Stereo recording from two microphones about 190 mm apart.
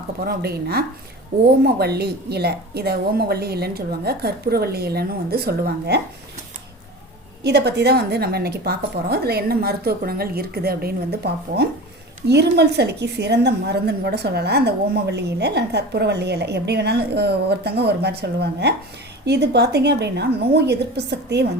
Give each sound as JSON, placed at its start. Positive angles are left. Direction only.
{"t": 0.3, "sound": "a woman's voice", "side_deg": -55}
{"t": 7.4, "sound": "a woman's voice", "side_deg": -60}